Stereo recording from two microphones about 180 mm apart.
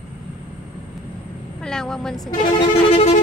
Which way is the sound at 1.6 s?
5° left (ahead or behind).